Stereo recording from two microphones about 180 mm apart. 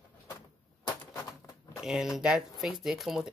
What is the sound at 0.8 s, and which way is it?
Typewriter, 20° left (ahead or behind).